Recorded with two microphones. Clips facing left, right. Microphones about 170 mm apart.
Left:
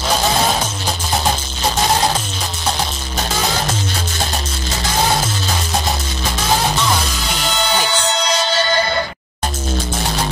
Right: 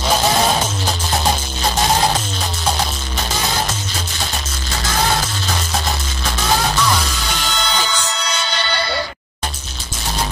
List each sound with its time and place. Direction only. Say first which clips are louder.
7.9 s music: left 5 dB; 35° left (ahead or behind)